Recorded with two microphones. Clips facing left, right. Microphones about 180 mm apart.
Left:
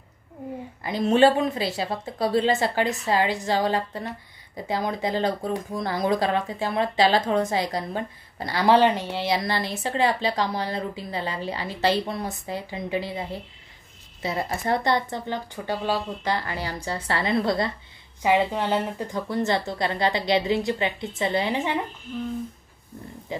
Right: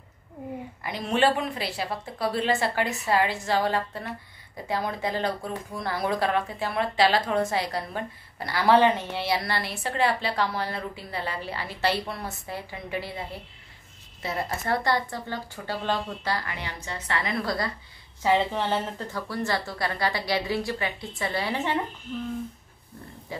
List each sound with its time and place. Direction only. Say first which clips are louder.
1.2 s speech: left 4 dB; 25° left (ahead or behind)
14.2 s speech: left 3 dB; 15° left (ahead or behind)
16.3 s a woman's voice: left 5 dB; 30° left (ahead or behind)
18.2 s speech: left 2 dB; 15° left (ahead or behind)